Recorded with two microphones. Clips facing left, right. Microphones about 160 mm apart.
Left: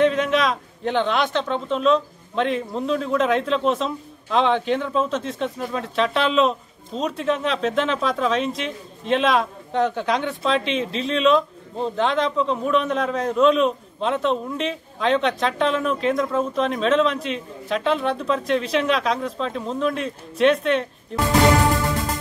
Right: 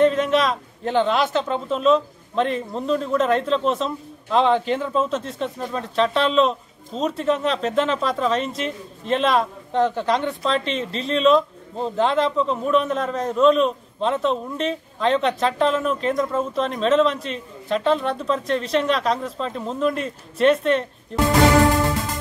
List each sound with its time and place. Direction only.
0.0 s a man's voice: centre (ahead or behind)